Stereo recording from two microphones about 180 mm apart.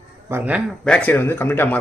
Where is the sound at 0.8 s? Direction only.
5° left (ahead or behind).